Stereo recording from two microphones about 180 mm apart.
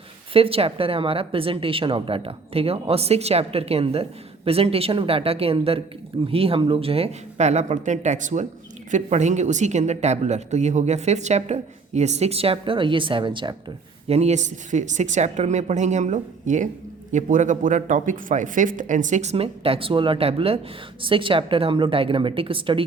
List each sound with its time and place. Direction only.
0.3 s speech: 30° right (ahead or behind)
14.1 s a woman's voice: 35° right (ahead or behind)